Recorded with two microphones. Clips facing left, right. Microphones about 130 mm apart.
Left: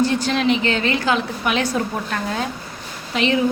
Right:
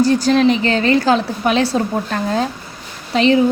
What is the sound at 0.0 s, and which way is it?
A woman's voice, 40° right (ahead or behind).